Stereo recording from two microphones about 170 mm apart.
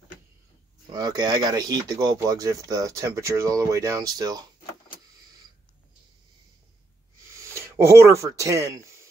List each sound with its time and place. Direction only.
0.9 s speech: 25° right (ahead or behind)
7.3 s speech: 15° right (ahead or behind)